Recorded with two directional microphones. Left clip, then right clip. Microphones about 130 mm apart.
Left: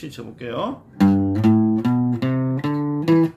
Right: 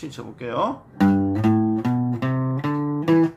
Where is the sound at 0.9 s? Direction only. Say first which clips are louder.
Left 2 dB; 15° left (ahead or behind).